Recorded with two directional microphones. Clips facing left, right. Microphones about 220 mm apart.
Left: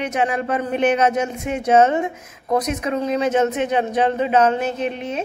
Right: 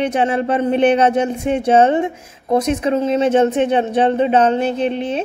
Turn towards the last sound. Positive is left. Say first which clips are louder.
# right 5 dB
turn(degrees=-30)  # may be behind; listen again after turning